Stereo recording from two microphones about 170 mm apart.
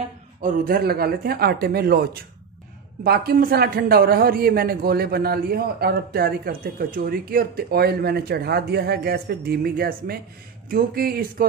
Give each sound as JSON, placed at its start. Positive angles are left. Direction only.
{"t": 0.4, "sound": "a man's voice", "side_deg": -55}